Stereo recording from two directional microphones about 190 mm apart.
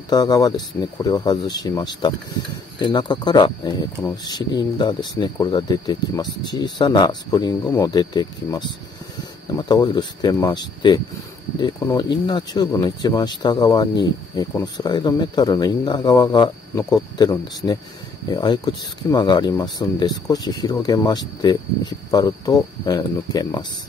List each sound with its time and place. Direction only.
0.1 s speech: 20° left (ahead or behind)